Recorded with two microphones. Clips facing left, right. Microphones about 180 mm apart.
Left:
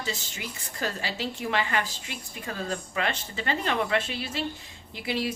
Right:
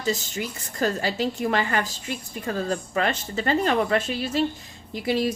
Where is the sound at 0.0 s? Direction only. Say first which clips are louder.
Right 8 dB; 45° right (ahead or behind).